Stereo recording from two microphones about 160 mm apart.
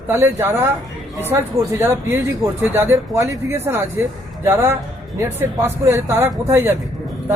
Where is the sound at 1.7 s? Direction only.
15° right (ahead or behind).